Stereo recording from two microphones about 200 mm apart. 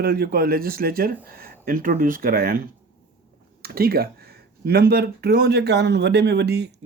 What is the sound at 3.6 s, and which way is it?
Speech, 50° right (ahead or behind).